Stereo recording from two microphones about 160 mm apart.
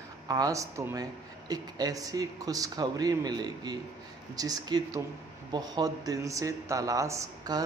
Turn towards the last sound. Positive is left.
turn(degrees=-20)  # may be behind; listen again after turning